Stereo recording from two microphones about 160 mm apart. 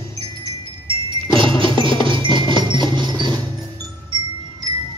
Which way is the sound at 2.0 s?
30° right (ahead or behind).